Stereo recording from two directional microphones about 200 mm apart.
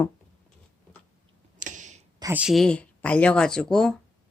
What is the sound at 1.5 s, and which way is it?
Tick-tock, 40° right (ahead or behind).